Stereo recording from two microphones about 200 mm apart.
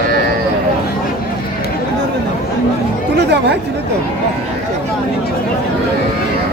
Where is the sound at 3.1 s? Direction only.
55° right (ahead or behind).